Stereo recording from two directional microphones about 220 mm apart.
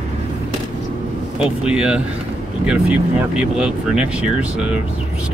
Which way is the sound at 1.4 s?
5° right (ahead or behind).